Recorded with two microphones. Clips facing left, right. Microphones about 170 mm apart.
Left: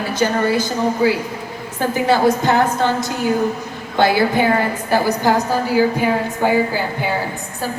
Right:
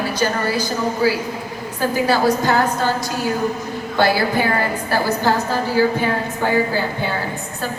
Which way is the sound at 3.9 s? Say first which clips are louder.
Left 2 dB; 20° left (ahead or behind).